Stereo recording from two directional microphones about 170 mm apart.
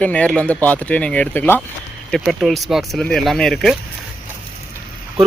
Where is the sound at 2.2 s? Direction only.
Centre (ahead or behind).